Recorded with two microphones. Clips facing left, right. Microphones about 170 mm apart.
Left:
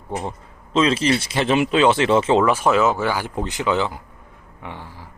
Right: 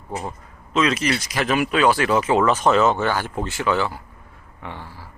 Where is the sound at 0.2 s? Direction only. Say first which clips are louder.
Left 2 dB; 30° left (ahead or behind).